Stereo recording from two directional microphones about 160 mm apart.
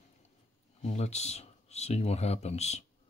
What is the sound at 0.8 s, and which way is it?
Speech, 45° left (ahead or behind).